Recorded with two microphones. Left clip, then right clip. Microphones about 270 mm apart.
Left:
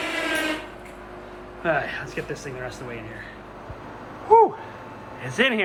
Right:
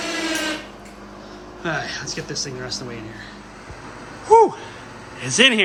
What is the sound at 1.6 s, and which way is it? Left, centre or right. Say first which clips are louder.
A man's voice: left 1 dB; centre.